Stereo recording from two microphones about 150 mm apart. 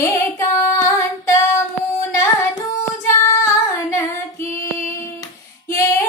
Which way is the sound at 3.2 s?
20° left (ahead or behind).